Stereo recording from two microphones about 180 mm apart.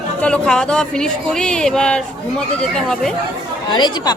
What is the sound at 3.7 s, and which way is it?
Speech, 25° left (ahead or behind).